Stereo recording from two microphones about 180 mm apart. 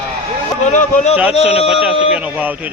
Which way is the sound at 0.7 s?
40° left (ahead or behind).